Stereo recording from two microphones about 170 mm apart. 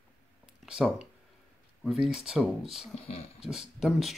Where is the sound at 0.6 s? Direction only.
5° right (ahead or behind).